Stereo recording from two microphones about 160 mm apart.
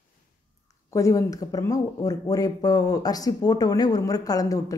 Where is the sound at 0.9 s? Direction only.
20° left (ahead or behind).